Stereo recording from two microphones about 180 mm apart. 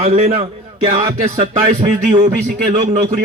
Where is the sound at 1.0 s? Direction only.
30° right (ahead or behind).